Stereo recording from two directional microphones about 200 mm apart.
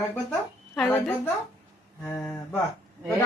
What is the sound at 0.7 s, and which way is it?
A woman's voice, 5° left (ahead or behind).